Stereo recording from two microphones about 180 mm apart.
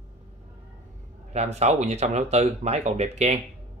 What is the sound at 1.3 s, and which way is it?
Speech, 40° right (ahead or behind).